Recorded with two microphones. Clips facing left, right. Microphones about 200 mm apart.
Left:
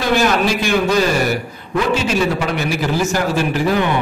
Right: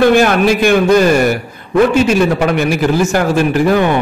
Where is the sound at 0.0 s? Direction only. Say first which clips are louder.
Right 6 dB; 55° right (ahead or behind).